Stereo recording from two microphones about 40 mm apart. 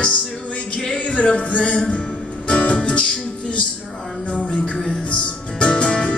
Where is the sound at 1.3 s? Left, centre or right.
Left.